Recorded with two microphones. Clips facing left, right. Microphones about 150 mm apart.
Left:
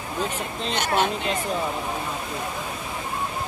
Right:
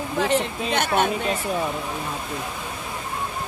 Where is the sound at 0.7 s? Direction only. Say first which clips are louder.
Even; 55° right (ahead or behind).